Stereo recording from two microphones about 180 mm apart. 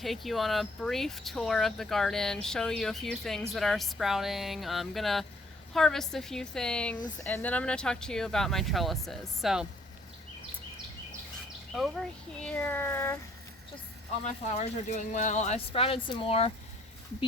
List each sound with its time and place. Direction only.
0.0 s speech: centre (ahead or behind)
12.4 s speech: 10° left (ahead or behind)
14.3 s speech: 40° left (ahead or behind)